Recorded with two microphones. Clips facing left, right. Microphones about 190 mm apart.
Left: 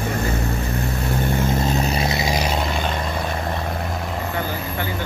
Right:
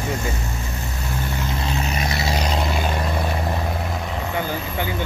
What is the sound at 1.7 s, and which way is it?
Vehicle, 35° left (ahead or behind).